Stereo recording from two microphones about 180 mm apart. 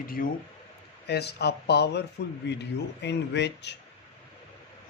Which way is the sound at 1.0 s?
65° left (ahead or behind).